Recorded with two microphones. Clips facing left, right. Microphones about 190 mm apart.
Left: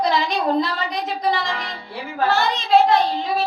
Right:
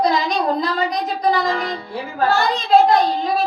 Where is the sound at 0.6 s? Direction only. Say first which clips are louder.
Right 4 dB; 40° right (ahead or behind).